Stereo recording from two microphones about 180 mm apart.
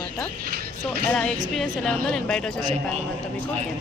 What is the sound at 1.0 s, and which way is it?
Speech, 5° left (ahead or behind).